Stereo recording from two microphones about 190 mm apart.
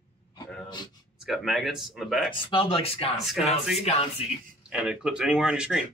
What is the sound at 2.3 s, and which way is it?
Speech, 25° left (ahead or behind).